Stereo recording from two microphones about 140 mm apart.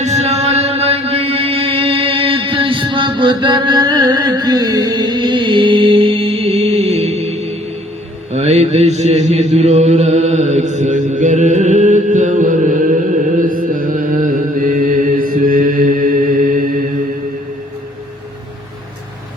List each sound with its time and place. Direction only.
0.0 s chant: 55° right (ahead or behind)
8.3 s mantra: 55° right (ahead or behind); by 16.6 s 80° right